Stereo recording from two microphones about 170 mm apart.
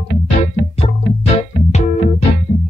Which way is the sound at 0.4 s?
35° left (ahead or behind).